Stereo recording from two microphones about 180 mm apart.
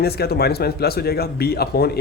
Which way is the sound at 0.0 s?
60° left (ahead or behind).